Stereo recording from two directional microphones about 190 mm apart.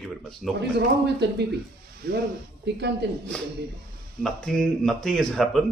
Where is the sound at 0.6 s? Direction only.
60° right (ahead or behind).